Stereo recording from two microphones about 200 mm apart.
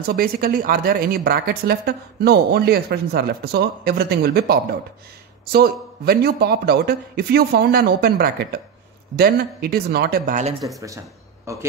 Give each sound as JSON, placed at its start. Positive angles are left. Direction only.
{"t": 0.0, "sound": "speech", "side_deg": -50}
{"t": 11.5, "sound": "speech", "side_deg": -15}